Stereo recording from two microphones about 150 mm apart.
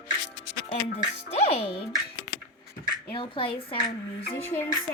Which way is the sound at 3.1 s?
35° left (ahead or behind).